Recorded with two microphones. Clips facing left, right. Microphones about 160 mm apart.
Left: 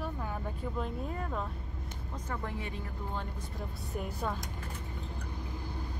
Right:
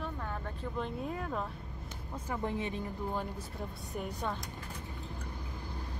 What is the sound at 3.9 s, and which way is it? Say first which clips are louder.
Speech: left 1 dB; centre (ahead or behind).